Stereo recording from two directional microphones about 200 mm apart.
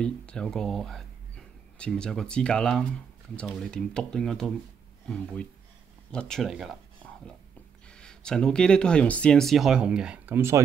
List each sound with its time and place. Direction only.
0.0 s speech: 5° left (ahead or behind)
7.9 s speech: 5° left (ahead or behind); by 10.6 s 10° right (ahead or behind)